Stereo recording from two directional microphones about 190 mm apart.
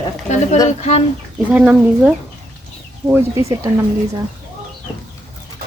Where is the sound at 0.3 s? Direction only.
40° left (ahead or behind).